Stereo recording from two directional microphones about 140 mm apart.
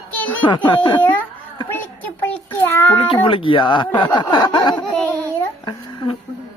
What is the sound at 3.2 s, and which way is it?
Speech, 40° left (ahead or behind).